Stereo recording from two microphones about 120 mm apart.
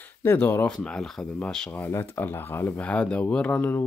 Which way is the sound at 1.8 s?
20° left (ahead or behind).